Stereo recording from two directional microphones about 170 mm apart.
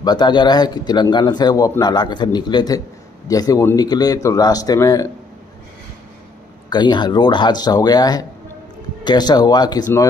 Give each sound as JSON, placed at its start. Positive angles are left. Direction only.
{"t": 0.0, "sound": "speech", "side_deg": 25}
{"t": 6.7, "sound": "speech", "side_deg": 25}